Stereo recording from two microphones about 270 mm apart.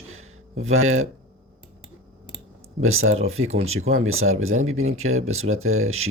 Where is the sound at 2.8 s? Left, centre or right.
Right.